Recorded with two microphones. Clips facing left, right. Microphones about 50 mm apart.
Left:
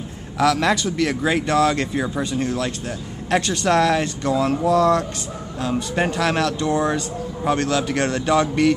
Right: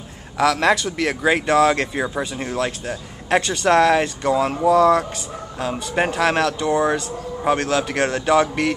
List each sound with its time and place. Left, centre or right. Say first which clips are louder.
0.4 s speech: right 1 dB; centre
7.4 s speech: right 1 dB; centre